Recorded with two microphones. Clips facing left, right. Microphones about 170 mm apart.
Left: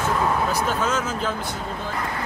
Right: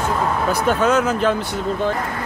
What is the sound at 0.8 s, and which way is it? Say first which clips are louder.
Speech: right 7 dB; 65° right (ahead or behind).